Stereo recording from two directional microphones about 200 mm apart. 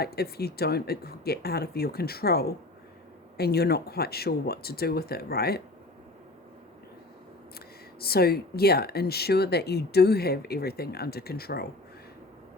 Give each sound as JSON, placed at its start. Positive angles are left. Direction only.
{"t": 0.0, "sound": "speech", "side_deg": 50}
{"t": 8.0, "sound": "speech", "side_deg": 50}